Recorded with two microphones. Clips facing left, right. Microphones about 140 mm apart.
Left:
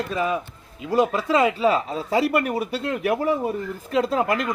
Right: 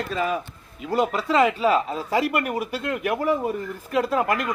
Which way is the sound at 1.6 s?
30° left (ahead or behind).